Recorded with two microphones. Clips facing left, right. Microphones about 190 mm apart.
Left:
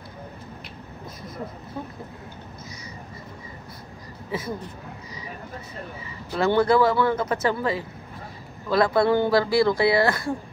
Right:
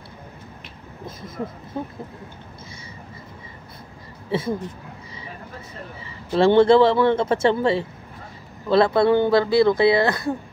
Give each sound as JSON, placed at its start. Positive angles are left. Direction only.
{"t": 1.8, "sound": "speech", "side_deg": -25}
{"t": 4.3, "sound": "speech", "side_deg": -30}
{"t": 6.3, "sound": "speech", "side_deg": -25}